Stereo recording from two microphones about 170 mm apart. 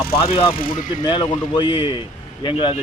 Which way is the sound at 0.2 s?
30° left (ahead or behind).